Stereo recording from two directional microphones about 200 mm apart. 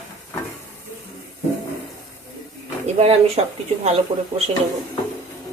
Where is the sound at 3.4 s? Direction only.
35° right (ahead or behind).